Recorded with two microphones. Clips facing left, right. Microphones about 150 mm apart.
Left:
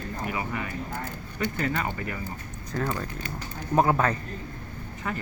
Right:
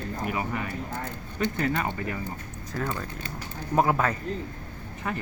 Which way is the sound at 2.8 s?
10° left (ahead or behind).